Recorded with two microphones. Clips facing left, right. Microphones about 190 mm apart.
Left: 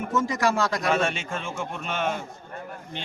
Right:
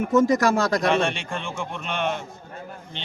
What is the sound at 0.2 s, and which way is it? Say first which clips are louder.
Speech: right 5 dB; 40° right (ahead or behind).